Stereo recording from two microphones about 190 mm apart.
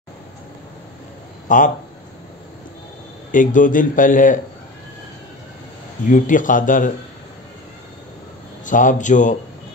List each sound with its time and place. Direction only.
1.5 s a man's voice: 45° left (ahead or behind)
3.3 s a man's voice: 45° left (ahead or behind)
6.0 s a man's voice: 45° left (ahead or behind)
8.6 s speech: 40° left (ahead or behind)